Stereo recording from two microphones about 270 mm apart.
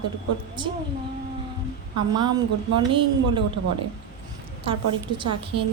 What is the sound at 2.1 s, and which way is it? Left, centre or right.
Speech, centre.